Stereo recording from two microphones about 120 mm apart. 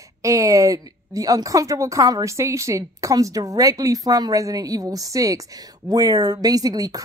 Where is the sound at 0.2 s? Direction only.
25° right (ahead or behind).